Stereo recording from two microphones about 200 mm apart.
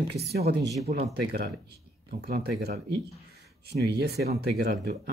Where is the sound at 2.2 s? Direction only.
50° right (ahead or behind).